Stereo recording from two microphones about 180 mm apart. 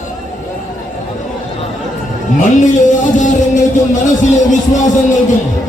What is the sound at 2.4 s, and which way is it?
Music, 45° left (ahead or behind).